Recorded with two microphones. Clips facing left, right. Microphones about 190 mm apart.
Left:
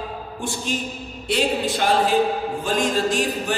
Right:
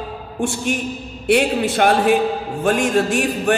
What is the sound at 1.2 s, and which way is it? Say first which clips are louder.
Speech: right 5 dB; 65° right (ahead or behind).